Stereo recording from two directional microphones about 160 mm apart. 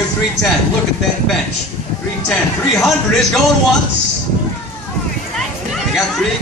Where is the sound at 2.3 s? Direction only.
5° left (ahead or behind).